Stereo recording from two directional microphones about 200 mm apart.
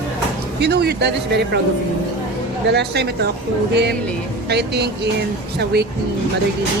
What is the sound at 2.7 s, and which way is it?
Speech, 55° right (ahead or behind).